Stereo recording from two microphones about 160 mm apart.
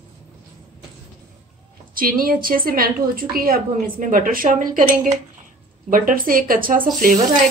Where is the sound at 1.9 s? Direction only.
60° right (ahead or behind).